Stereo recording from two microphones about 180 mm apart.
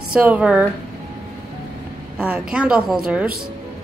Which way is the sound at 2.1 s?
5° right (ahead or behind).